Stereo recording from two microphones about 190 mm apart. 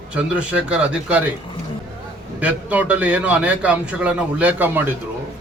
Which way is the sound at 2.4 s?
10° right (ahead or behind).